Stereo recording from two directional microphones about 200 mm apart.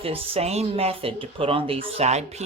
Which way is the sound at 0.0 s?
30° right (ahead or behind).